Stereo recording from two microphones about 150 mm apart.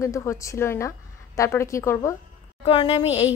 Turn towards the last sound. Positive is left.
turn(degrees=40)  # may be behind; listen again after turning